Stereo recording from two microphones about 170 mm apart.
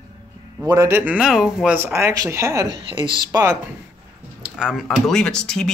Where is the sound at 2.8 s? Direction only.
30° right (ahead or behind).